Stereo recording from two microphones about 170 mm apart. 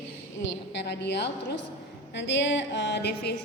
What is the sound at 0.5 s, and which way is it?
A woman's voice, 85° left.